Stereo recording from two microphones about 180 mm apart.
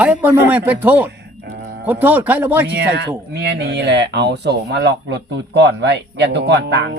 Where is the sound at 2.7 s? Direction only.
70° right (ahead or behind).